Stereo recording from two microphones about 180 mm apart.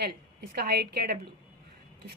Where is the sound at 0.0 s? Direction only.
60° right (ahead or behind).